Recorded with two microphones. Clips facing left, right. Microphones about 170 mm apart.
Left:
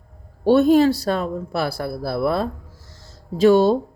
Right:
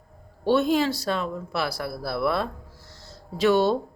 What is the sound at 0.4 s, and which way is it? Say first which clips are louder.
A woman's voice: left 7 dB; 40° left (ahead or behind).